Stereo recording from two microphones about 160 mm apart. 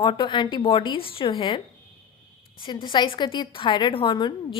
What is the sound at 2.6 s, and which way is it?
A woman's voice, 30° left (ahead or behind).